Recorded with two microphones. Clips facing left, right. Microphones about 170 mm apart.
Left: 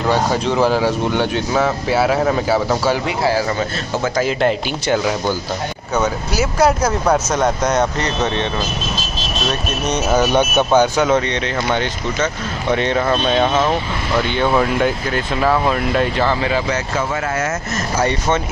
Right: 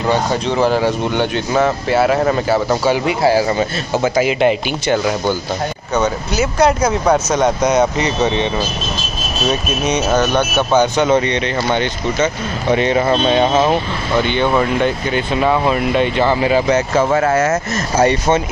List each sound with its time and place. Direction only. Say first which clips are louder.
0.1 s speech: even; 5° left (ahead or behind)
3.3 s speech: right 4 dB; 15° right (ahead or behind)
9.5 s speech: right 4 dB; centre (ahead or behind)
14.3 s speech: left 1 dB; centre (ahead or behind)
16.4 s speech: right 5 dB; 20° right (ahead or behind)
17.1 s speech: right 7 dB; 45° right (ahead or behind)